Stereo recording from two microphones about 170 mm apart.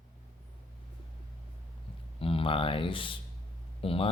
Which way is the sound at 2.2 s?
30° left (ahead or behind).